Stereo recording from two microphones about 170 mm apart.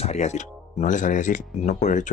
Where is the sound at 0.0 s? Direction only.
40° left (ahead or behind).